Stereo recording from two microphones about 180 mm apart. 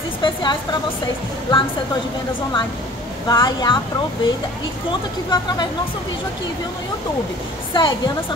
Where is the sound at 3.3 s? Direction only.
20° left (ahead or behind).